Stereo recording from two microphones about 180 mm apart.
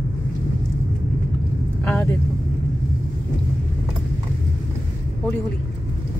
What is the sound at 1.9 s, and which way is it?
Vehicle, 10° left (ahead or behind).